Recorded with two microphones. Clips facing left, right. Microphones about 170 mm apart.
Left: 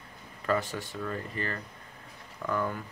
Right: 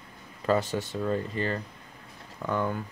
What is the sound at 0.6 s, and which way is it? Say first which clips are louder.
Speech: right 6 dB; 90° right.